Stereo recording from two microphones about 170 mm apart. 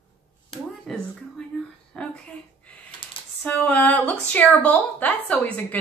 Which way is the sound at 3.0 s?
30° left (ahead or behind).